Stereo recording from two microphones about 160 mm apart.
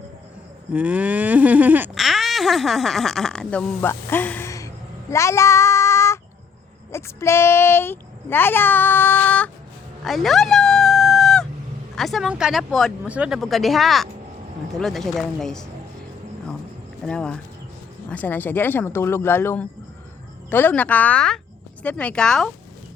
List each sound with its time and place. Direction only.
0.7 s a sound: 10° right (ahead or behind)
2.0 s speech: centre (ahead or behind); by 4.7 s 20° left (ahead or behind)
5.1 s child singing: 20° left (ahead or behind)
6.9 s a child's voice: 15° left (ahead or behind)
10.0 s fowl: centre (ahead or behind)
11.9 s speech: centre (ahead or behind)
17.1 s speech: 5° left (ahead or behind)